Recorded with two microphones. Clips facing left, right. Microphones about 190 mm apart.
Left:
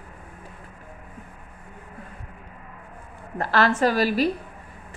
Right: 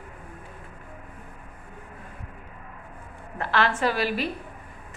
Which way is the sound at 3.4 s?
40° left (ahead or behind).